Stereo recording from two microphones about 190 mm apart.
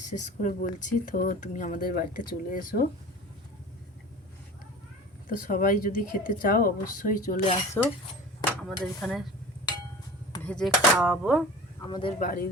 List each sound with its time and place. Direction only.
0.0 s speech: 40° left (ahead or behind)
5.4 s speech: 45° left (ahead or behind)
7.8 s speech: 10° left (ahead or behind)
9.0 s speech: 5° left (ahead or behind)
10.4 s speech: 5° left (ahead or behind)
10.7 s speech: 5° right (ahead or behind)
11.8 s speech: 25° left (ahead or behind)
12.2 s speech: 45° left (ahead or behind)